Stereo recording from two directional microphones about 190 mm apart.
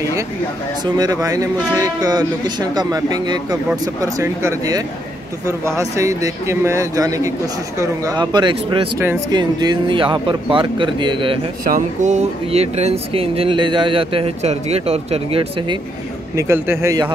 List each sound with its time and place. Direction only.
0.9 s speech: 20° right (ahead or behind)
9.0 s speech: 10° right (ahead or behind)
11.6 s speech: 45° right (ahead or behind)
16.3 s speech: 15° right (ahead or behind)